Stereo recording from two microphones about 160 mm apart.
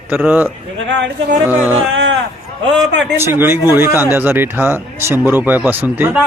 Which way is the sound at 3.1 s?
15° right (ahead or behind).